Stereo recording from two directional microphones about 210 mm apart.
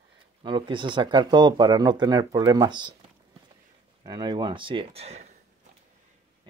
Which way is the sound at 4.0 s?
20° right (ahead or behind).